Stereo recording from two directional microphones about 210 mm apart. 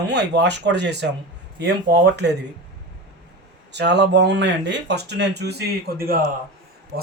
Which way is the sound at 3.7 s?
55° right (ahead or behind).